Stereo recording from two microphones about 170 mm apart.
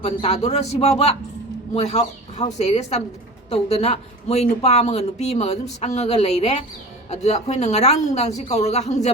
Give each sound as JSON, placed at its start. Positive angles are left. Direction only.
{"t": 0.0, "sound": "speech", "side_deg": 40}